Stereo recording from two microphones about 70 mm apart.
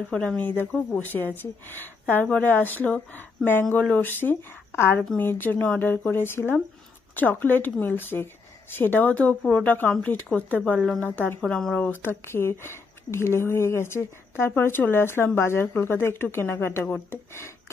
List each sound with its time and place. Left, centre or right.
0.1 s speech: centre
0.4 s speech: left
11.4 s speech: centre
11.7 s speech: left